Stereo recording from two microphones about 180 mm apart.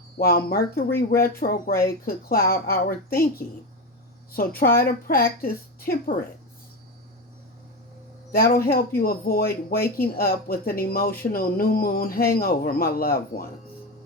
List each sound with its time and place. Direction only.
0.2 s speech: 55° left (ahead or behind)
8.3 s speech: 55° left (ahead or behind)